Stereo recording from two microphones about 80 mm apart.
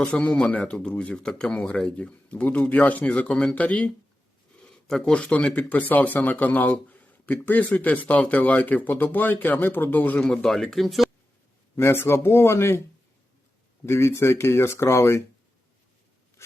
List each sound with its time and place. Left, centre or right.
0.0 s speech: centre
4.9 s speech: centre
5.1 s speech: centre
10.2 s speech: centre
11.8 s speech: left
13.8 s speech: left